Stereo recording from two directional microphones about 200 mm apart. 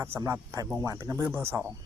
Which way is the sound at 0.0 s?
15° right (ahead or behind).